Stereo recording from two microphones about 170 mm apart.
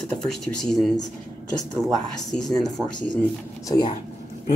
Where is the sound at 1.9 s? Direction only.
Centre (ahead or behind).